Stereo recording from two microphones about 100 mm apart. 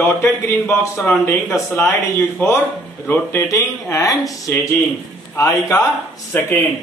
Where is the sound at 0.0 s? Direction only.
25° left (ahead or behind).